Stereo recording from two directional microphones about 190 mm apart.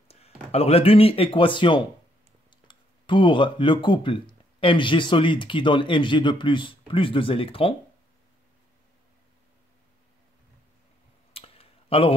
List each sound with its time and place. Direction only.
0.1 s speech: 35° left (ahead or behind)
11.3 s clicking: 30° left (ahead or behind)